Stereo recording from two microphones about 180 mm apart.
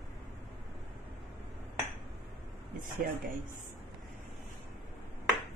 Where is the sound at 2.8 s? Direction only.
45° right (ahead or behind).